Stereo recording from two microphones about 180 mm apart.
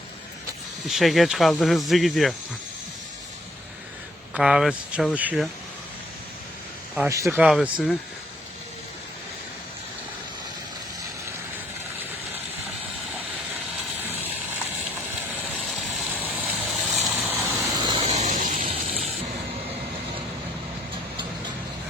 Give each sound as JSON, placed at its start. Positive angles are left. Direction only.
{"t": 0.9, "sound": "speech", "side_deg": 0}
{"t": 4.4, "sound": "speech", "side_deg": -5}
{"t": 7.1, "sound": "speech", "side_deg": -15}
{"t": 7.3, "sound": "speech", "side_deg": -5}
{"t": 14.1, "sound": "a sound", "side_deg": -10}
{"t": 15.5, "sound": "vehicle", "side_deg": 0}
{"t": 18.0, "sound": "vehicle", "side_deg": -40}